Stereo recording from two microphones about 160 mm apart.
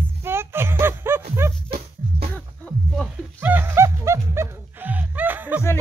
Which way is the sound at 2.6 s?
5° left (ahead or behind).